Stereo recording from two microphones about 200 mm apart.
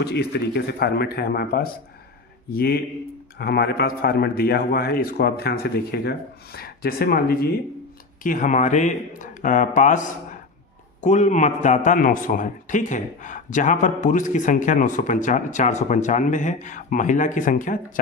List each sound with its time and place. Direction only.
0.0 s a man's voice: 55° left (ahead or behind)